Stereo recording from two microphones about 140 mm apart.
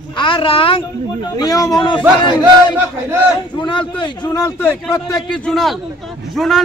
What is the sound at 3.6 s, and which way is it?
Speech, 35° left (ahead or behind).